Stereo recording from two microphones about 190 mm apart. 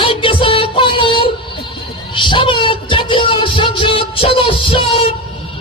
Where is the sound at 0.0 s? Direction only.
25° left (ahead or behind).